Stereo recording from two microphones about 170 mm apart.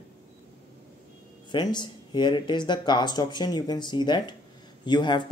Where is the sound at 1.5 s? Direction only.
25° left (ahead or behind).